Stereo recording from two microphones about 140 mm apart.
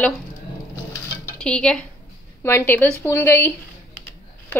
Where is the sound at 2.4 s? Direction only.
15° left (ahead or behind).